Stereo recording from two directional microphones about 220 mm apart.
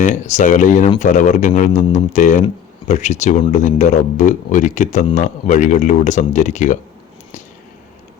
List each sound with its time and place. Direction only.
0.0 s speech: 35° left (ahead or behind)